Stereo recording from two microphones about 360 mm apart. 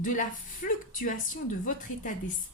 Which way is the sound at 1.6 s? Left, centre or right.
Left.